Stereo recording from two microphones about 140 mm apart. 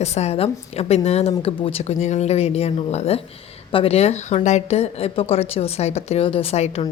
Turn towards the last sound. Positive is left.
turn(degrees=50)  # may be behind; listen again after turning